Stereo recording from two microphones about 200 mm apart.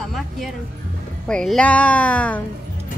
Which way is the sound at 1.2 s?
5° left (ahead or behind).